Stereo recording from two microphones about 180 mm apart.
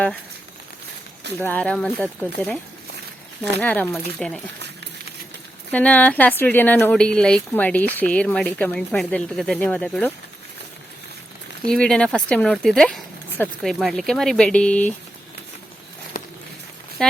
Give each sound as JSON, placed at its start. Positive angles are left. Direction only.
{"t": 1.4, "sound": "speech", "side_deg": 10}
{"t": 3.6, "sound": "speech", "side_deg": 10}
{"t": 5.7, "sound": "speech", "side_deg": 10}
{"t": 11.6, "sound": "speech", "side_deg": 5}
{"t": 16.1, "sound": "walk", "side_deg": 50}
{"t": 17.0, "sound": "speech", "side_deg": 5}